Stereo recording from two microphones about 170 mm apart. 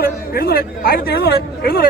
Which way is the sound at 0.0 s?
60° left (ahead or behind).